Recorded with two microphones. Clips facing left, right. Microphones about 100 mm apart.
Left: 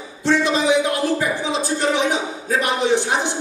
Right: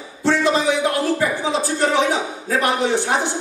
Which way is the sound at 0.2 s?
20° left (ahead or behind).